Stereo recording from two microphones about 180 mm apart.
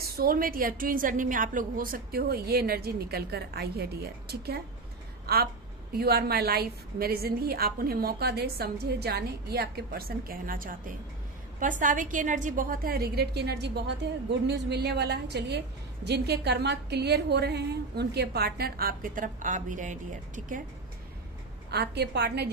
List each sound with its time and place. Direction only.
0.0 s a woman's voice: 55° right (ahead or behind)
21.6 s a woman's voice: 65° right (ahead or behind)